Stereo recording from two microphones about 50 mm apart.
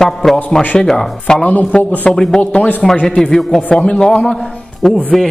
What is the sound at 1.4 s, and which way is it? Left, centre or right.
Speech, left.